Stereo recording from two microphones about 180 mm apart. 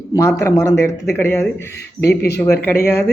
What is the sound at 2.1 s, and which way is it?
Speech, 65° left (ahead or behind).